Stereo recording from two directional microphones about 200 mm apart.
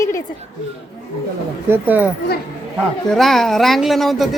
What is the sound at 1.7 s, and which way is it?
Speech, 10° right (ahead or behind).